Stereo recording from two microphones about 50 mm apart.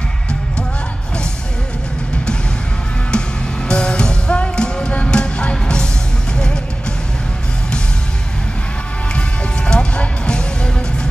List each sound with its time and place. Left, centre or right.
3.1 s music: centre
9.7 s music: centre